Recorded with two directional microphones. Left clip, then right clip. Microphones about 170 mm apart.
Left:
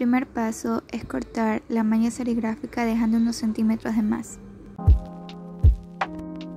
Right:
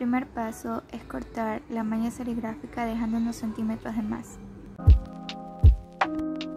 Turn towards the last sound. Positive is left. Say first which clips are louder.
# right 3 dB
turn(degrees=0)  # may be behind; listen again after turning